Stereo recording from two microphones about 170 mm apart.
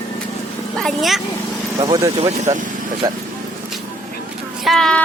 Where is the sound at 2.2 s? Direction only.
40° right (ahead or behind).